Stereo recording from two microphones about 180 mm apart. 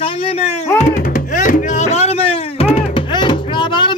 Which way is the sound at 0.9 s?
50° left (ahead or behind).